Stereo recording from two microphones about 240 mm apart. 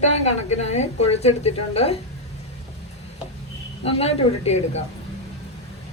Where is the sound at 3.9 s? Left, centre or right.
Left.